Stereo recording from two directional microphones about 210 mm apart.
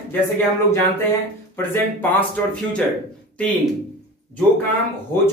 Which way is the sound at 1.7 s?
10° left (ahead or behind).